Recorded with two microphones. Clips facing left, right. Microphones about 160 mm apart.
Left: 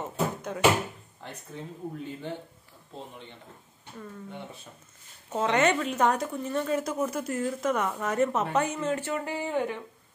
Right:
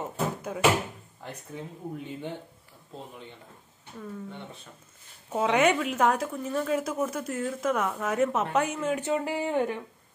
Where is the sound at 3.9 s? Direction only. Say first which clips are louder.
Right 2 dB; centre (ahead or behind).